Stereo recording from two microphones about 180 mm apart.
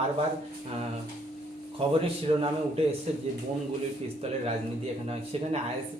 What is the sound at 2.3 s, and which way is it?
Speech, 35° right (ahead or behind).